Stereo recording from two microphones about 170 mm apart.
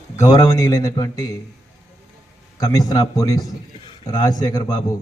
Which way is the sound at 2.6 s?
20° left (ahead or behind).